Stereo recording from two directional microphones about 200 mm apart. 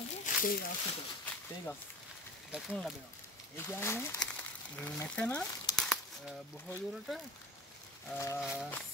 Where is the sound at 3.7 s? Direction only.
10° left (ahead or behind).